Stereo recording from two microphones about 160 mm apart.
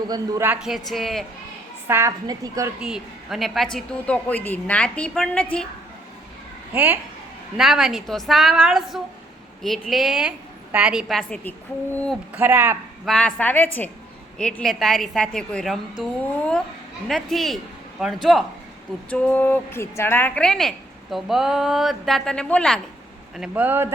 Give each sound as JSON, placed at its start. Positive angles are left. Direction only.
{"t": 0.1, "sound": "a man's voice", "side_deg": -15}
{"t": 0.6, "sound": "a woman's voice", "side_deg": 0}
{"t": 1.9, "sound": "a woman's voice", "side_deg": -15}
{"t": 2.8, "sound": "a woman's voice", "side_deg": -5}
{"t": 6.7, "sound": "a man's voice", "side_deg": -10}
{"t": 12.3, "sound": "a man's voice", "side_deg": -10}
{"t": 13.1, "sound": "a woman's voice", "side_deg": 5}
{"t": 19.1, "sound": "a woman's voice", "side_deg": 10}
{"t": 23.4, "sound": "a man's voice", "side_deg": -10}